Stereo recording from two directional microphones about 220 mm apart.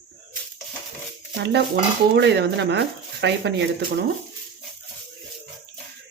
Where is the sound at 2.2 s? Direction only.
50° right (ahead or behind).